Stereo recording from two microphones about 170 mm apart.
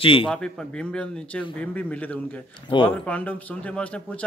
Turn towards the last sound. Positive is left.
turn(degrees=5)  # may be behind; listen again after turning